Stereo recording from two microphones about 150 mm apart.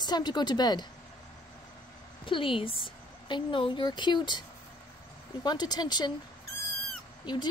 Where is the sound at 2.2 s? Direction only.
35° left (ahead or behind).